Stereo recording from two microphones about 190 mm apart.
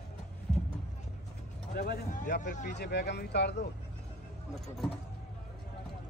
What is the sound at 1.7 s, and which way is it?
Speech, 60° left (ahead or behind).